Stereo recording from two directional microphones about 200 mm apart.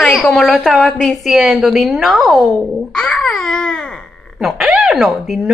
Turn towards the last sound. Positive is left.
turn(degrees=0)  # may be behind; listen again after turning